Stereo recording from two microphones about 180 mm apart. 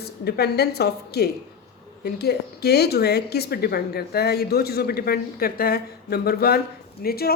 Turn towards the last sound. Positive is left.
turn(degrees=60)  # may be behind; listen again after turning